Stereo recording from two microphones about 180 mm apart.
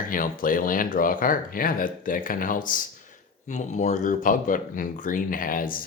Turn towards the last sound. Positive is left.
turn(degrees=50)  # may be behind; listen again after turning